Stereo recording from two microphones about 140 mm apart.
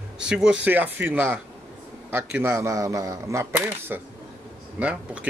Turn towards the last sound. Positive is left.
turn(degrees=-10)  # may be behind; listen again after turning